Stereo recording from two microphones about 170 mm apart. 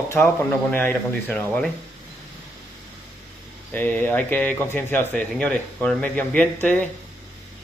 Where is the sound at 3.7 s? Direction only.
10° left (ahead or behind).